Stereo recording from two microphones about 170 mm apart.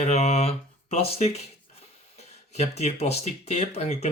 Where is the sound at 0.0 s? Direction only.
40° left (ahead or behind).